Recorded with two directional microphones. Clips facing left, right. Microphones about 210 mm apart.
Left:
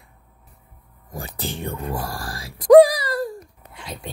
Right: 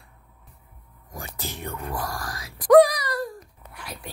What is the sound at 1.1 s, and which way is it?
Speech, 30° left (ahead or behind).